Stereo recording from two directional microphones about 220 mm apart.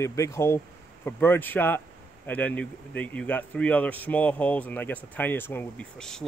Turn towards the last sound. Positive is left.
turn(degrees=0)  # may be behind; listen again after turning